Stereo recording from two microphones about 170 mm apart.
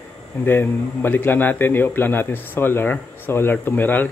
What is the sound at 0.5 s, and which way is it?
A man's voice, 10° left (ahead or behind).